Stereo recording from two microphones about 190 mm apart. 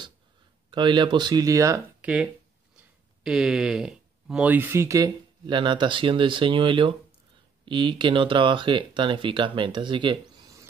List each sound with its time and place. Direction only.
0.7 s speech: 25° right (ahead or behind)
3.3 s speech: centre (ahead or behind); by 10.6 s 25° right (ahead or behind)